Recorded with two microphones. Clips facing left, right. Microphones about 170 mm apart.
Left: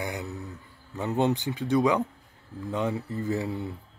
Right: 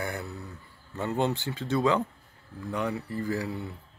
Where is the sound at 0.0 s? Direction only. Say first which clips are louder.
Left 1 dB; 20° left (ahead or behind).